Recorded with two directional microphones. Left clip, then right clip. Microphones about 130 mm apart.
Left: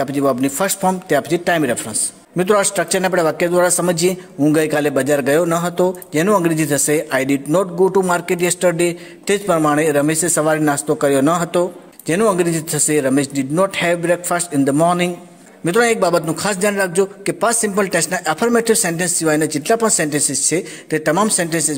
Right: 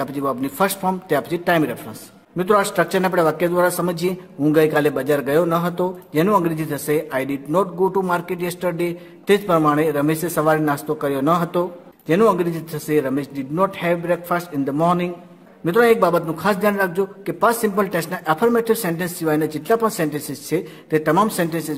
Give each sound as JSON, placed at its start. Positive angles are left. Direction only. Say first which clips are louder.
{"t": 0.0, "sound": "a man's voice", "louder": "left 6 dB", "side_deg": 20}